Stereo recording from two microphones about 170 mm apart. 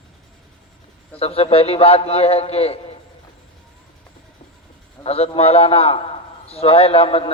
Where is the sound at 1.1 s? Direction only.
35° left (ahead or behind).